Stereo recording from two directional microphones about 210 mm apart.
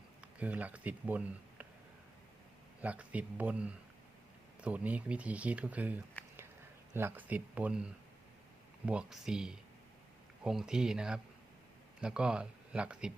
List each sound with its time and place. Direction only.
0.2 s speech: 5° right (ahead or behind)
2.8 s speech: 5° right (ahead or behind)